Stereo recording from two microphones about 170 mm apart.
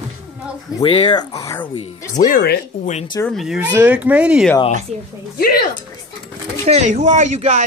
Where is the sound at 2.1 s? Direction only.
45° left (ahead or behind).